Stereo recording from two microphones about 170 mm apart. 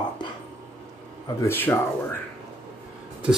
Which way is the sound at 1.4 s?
15° left (ahead or behind).